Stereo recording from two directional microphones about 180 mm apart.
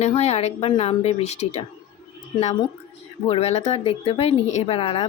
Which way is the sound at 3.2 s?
35° left (ahead or behind).